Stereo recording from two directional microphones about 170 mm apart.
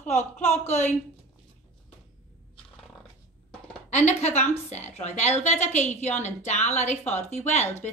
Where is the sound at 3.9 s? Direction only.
40° left (ahead or behind).